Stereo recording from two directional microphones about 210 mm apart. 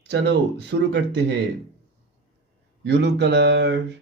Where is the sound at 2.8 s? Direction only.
55° right (ahead or behind).